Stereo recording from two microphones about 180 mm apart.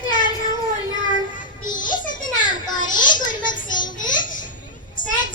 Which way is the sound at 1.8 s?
45° left (ahead or behind).